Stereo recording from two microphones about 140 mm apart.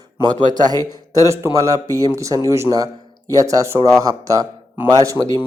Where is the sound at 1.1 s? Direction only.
20° right (ahead or behind).